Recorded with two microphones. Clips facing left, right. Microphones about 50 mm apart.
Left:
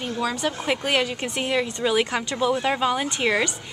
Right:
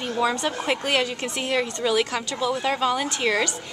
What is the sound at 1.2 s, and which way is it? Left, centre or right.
Speech, centre.